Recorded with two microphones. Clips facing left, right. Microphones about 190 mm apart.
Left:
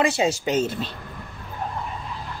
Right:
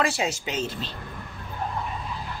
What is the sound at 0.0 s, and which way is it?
Speech, 25° left (ahead or behind).